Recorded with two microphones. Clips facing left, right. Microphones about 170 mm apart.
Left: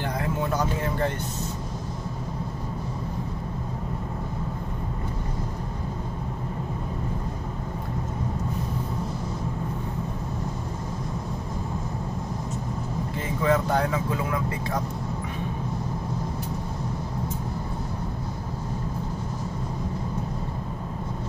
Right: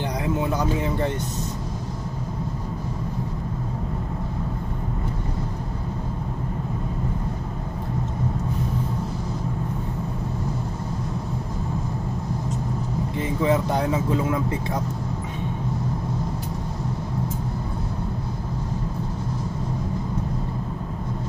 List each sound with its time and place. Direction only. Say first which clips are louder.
0.2 s vehicle: right 3 dB; 15° right (ahead or behind)
13.4 s vehicle: right 1 dB; 20° right (ahead or behind)